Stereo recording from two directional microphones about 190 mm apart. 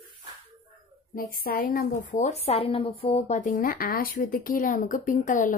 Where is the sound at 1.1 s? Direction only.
50° left (ahead or behind).